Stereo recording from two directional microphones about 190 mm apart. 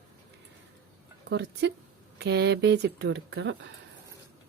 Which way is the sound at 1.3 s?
65° right (ahead or behind).